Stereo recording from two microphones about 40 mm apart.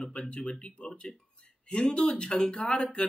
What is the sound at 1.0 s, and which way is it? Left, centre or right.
Speech, centre.